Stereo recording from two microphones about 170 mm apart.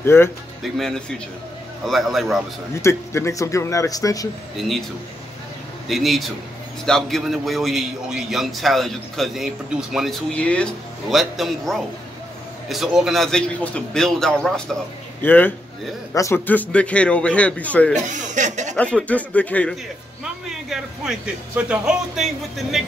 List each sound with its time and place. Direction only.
0.0 s a man's voice: 15° left (ahead or behind)
0.7 s a man's voice: 5° left (ahead or behind)
2.8 s a man's voice: 15° left (ahead or behind)
4.6 s a man's voice: centre (ahead or behind)
5.9 s a man's voice: centre (ahead or behind)
17.9 s speech: 45° right (ahead or behind)
18.8 s a man's voice: 5° left (ahead or behind)
20.4 s a man's voice: 5° right (ahead or behind)